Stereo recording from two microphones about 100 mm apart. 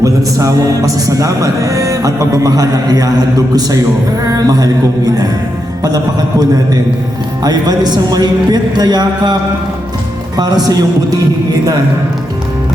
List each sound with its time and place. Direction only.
0.0 s a man's voice: 35° right (ahead or behind)
7.4 s a man's voice: 45° right (ahead or behind)